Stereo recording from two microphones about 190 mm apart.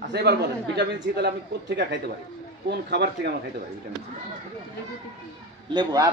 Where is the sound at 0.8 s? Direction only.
65° right (ahead or behind).